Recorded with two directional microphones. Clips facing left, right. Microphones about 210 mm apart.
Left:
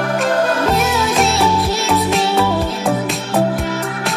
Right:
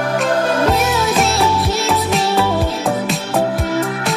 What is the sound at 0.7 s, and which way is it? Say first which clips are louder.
Music: even; centre (ahead or behind).